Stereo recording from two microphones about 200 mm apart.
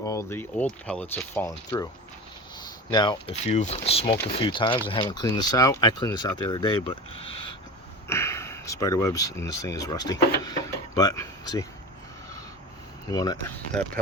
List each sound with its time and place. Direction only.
0.0 s speech: 15° left (ahead or behind)
2.9 s speech: 20° left (ahead or behind)
8.0 s speech: 15° left (ahead or behind)
13.1 s speech: 20° left (ahead or behind)